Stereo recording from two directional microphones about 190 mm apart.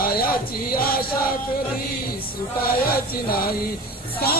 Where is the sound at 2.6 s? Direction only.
50° left (ahead or behind).